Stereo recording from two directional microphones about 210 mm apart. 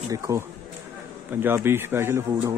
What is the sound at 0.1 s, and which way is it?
Speech, 15° right (ahead or behind).